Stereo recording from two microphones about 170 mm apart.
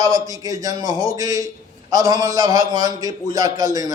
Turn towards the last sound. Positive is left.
turn(degrees=-20)  # may be behind; listen again after turning